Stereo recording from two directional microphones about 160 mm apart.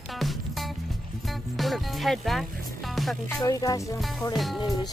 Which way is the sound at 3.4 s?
20° left (ahead or behind).